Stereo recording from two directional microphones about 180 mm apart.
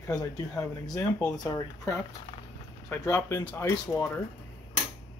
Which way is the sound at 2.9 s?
15° left (ahead or behind).